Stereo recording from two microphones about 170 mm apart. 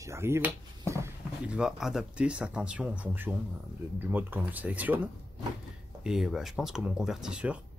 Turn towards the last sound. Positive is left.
turn(degrees=-5)  # may be behind; listen again after turning